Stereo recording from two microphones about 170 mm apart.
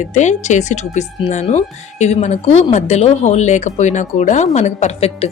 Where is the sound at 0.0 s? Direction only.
45° left (ahead or behind).